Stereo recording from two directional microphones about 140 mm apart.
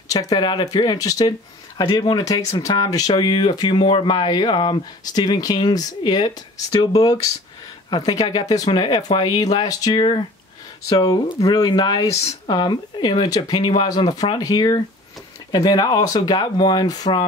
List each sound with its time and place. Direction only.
0.1 s speech: 25° left (ahead or behind)
7.9 s speech: 30° left (ahead or behind)